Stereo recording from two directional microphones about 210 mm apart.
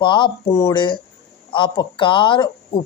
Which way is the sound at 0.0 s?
20° left (ahead or behind).